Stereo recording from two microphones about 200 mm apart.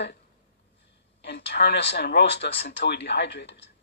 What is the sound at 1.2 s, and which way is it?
Speech, 55° left (ahead or behind).